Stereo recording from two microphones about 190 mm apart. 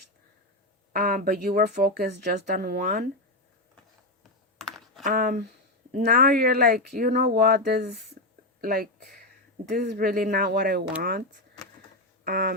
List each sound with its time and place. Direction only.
0.9 s speech: 50° right (ahead or behind)
4.2 s computer keyboard: centre (ahead or behind)
5.0 s speech: 45° right (ahead or behind)
8.2 s a sound: 45° right (ahead or behind)
8.6 s speech: 55° right (ahead or behind)
9.6 s speech: 40° right (ahead or behind)
9.9 s speech: 50° right (ahead or behind)
12.2 s a sound: 50° right (ahead or behind)